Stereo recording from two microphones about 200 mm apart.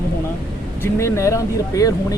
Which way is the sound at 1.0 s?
15° left (ahead or behind).